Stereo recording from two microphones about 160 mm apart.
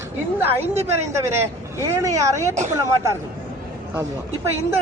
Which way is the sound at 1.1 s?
15° right (ahead or behind).